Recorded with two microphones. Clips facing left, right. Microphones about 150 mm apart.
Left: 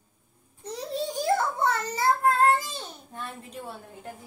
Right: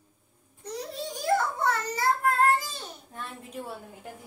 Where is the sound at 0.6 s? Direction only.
25° left (ahead or behind).